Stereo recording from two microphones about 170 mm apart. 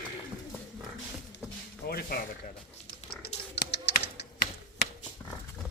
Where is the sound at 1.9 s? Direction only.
65° left (ahead or behind).